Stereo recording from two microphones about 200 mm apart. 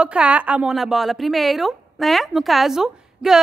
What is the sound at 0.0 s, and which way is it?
Speech, 5° right (ahead or behind).